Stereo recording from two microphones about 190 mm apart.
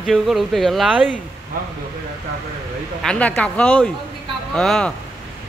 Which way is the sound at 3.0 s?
5° left (ahead or behind).